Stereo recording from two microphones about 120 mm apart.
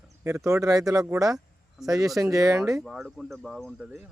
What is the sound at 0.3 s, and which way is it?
Speech, 25° right (ahead or behind).